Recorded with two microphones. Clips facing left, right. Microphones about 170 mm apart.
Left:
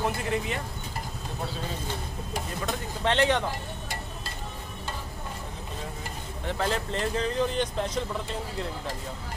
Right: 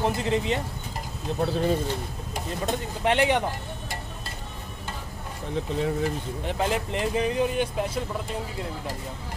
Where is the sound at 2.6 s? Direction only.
15° right (ahead or behind).